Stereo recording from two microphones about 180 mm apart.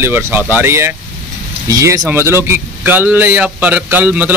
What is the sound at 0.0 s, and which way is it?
A man's voice, 10° right (ahead or behind).